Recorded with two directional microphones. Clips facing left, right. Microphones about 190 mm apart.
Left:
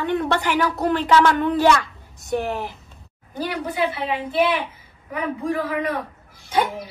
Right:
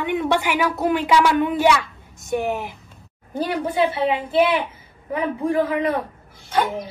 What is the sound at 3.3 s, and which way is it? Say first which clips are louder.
Speech: right 4 dB; 25° right (ahead or behind).